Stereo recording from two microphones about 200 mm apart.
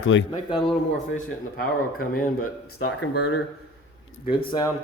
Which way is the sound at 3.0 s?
60° left (ahead or behind).